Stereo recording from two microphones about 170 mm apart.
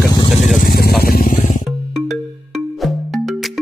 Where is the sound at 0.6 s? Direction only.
65° left (ahead or behind).